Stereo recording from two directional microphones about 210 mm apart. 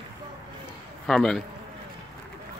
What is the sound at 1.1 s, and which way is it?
Speech, centre (ahead or behind).